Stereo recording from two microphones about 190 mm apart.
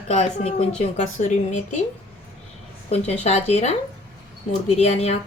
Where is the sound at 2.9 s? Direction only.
35° left (ahead or behind).